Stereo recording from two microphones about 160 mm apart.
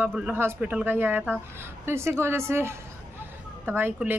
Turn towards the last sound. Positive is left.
turn(degrees=-10)  # may be behind; listen again after turning